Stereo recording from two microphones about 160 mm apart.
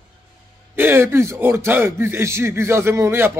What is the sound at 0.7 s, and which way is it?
Speech, 15° right (ahead or behind).